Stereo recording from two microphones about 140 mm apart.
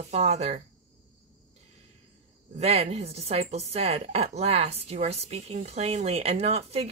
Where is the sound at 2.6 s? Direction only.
50° right (ahead or behind).